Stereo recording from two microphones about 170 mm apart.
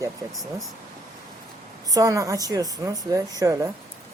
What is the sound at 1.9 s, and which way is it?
Speech, 20° right (ahead or behind).